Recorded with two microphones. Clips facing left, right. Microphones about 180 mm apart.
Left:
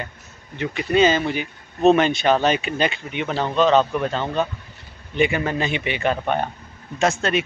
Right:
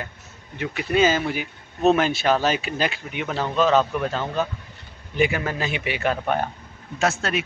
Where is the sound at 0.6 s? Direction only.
5° right (ahead or behind).